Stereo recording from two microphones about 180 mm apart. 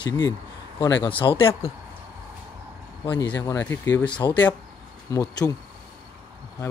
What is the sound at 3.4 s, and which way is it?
Speech, 15° left (ahead or behind).